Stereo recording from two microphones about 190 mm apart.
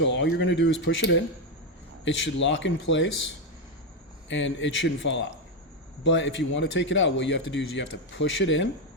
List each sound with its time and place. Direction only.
0.0 s a man's voice: 70° left (ahead or behind)
4.3 s a man's voice: 75° left (ahead or behind)